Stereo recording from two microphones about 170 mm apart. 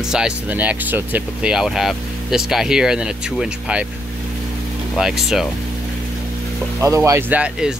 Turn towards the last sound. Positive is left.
turn(degrees=-5)  # may be behind; listen again after turning